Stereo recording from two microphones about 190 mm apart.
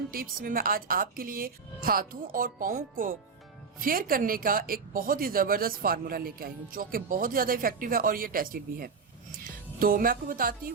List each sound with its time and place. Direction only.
0.1 s speech: 50° right (ahead or behind)